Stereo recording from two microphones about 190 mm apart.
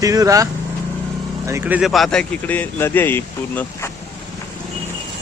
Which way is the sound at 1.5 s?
10° right (ahead or behind).